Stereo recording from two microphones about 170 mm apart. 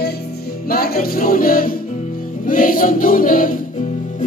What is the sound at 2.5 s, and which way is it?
Choir, 55° left (ahead or behind).